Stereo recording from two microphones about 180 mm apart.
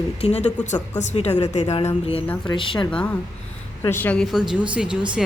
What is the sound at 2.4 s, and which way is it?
Speech, 25° left (ahead or behind).